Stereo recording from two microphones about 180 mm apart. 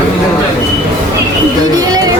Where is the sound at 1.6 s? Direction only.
20° right (ahead or behind).